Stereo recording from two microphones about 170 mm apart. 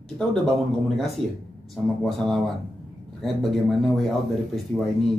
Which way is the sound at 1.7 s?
Centre (ahead or behind).